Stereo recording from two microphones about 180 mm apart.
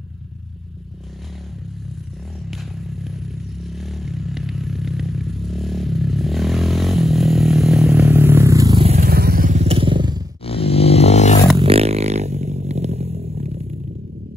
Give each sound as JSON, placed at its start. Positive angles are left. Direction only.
{"t": 2.5, "sound": "vehicle", "side_deg": 0}
{"t": 8.7, "sound": "vehicle", "side_deg": -35}
{"t": 9.0, "sound": "motorcycle", "side_deg": -55}
{"t": 10.4, "sound": "a sound", "side_deg": 30}
{"t": 11.5, "sound": "vehicle", "side_deg": -30}
{"t": 13.1, "sound": "a sound", "side_deg": -55}